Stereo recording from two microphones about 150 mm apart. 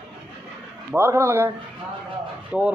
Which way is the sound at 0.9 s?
15° right (ahead or behind).